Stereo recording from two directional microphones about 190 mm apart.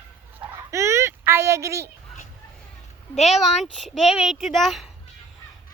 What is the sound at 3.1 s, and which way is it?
Speech, 35° left (ahead or behind).